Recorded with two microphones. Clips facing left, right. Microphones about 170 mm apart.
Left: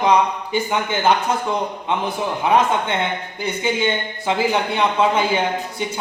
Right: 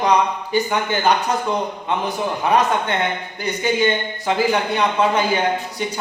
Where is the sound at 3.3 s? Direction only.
25° left (ahead or behind).